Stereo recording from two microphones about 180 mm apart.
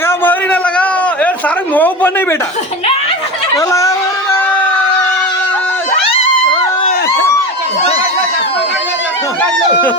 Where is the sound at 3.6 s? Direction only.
20° left (ahead or behind).